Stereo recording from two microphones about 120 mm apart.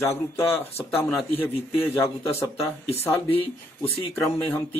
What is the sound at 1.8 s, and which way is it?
Speech, 20° left (ahead or behind).